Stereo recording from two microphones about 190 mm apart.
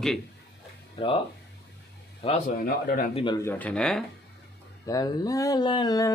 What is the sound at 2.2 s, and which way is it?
Speech, 35° left (ahead or behind).